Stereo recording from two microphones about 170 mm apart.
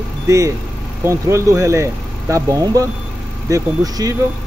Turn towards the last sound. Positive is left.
turn(degrees=-20)  # may be behind; listen again after turning